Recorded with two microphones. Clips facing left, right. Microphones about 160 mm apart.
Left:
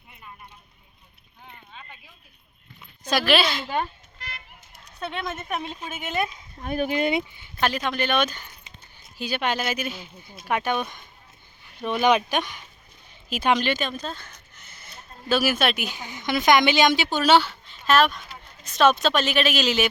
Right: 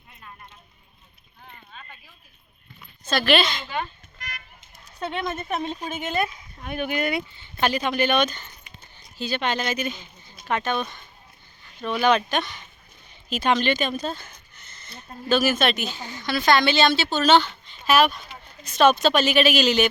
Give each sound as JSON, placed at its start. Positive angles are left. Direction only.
{"t": 1.5, "sound": "a sound", "side_deg": 15}
{"t": 3.2, "sound": "speech", "side_deg": 5}
{"t": 4.2, "sound": "music", "side_deg": 30}
{"t": 4.9, "sound": "speech", "side_deg": 0}
{"t": 6.6, "sound": "speech", "side_deg": 35}
{"t": 7.6, "sound": "speech", "side_deg": 0}
{"t": 14.0, "sound": "speech", "side_deg": -10}
{"t": 14.5, "sound": "speech", "side_deg": 5}